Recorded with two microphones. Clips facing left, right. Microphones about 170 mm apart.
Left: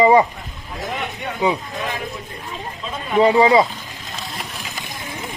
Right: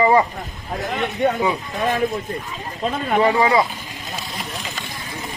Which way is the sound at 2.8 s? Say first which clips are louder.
Right 9 dB; 55° right (ahead or behind).